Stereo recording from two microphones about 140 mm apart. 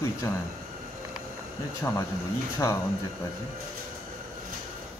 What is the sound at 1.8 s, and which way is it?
Speech, 20° left (ahead or behind).